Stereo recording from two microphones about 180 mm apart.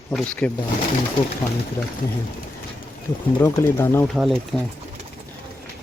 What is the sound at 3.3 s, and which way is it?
Speech, 10° left (ahead or behind).